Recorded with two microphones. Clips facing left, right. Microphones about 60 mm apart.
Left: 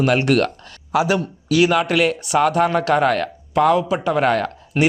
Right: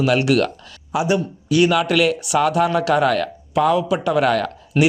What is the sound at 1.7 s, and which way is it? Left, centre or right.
A man's voice, left.